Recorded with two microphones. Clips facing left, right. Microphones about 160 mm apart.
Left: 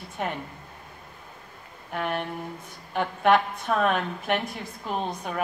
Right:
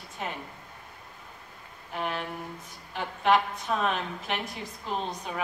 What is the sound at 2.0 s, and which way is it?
A woman's voice, 60° left (ahead or behind).